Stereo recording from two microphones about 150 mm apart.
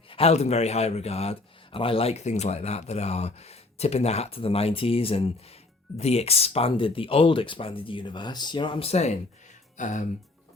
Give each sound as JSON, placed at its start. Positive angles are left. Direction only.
{"t": 0.1, "sound": "speech", "side_deg": 45}
{"t": 9.7, "sound": "speech", "side_deg": 55}